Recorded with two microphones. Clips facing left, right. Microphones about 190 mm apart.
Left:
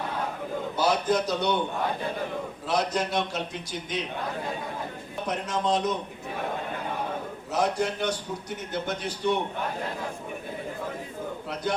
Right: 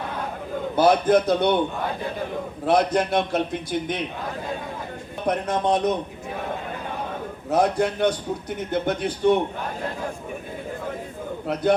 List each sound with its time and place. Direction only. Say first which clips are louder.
0.8 s a man's voice: right 7 dB; 55° right (ahead or behind)
2.6 s a man's voice: right 7 dB; 55° right (ahead or behind)
5.2 s a man's voice: right 5 dB; 60° right (ahead or behind)
7.5 s a man's voice: right 6 dB; 60° right (ahead or behind)